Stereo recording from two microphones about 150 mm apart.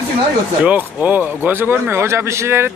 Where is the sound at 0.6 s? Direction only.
10° right (ahead or behind).